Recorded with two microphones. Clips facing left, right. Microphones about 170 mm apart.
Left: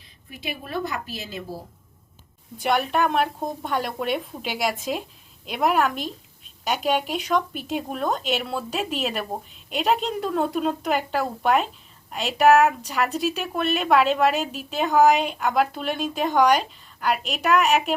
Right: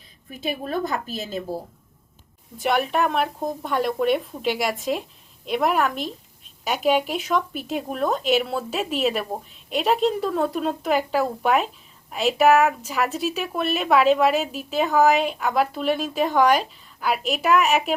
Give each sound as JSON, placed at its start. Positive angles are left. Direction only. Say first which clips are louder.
{"t": 0.3, "sound": "a woman's voice", "louder": "right 6 dB", "side_deg": -45}
{"t": 2.6, "sound": "a woman's voice", "louder": "even", "side_deg": 0}